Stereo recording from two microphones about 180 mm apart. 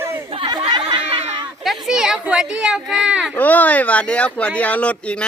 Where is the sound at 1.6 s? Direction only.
Centre (ahead or behind).